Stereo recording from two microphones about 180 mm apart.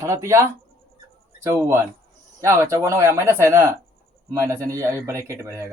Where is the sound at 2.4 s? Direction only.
15° right (ahead or behind).